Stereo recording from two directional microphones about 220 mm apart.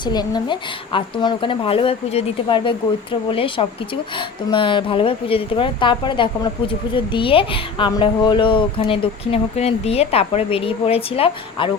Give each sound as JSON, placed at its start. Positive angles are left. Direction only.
{"t": 0.0, "sound": "a woman's voice", "side_deg": 20}